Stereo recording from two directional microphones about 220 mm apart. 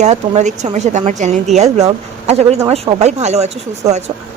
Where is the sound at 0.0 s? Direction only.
30° right (ahead or behind).